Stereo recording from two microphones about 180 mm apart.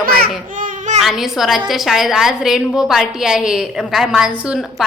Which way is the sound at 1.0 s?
Centre (ahead or behind).